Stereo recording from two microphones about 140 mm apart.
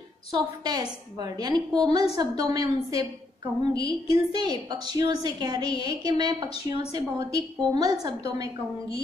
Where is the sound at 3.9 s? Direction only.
40° left (ahead or behind).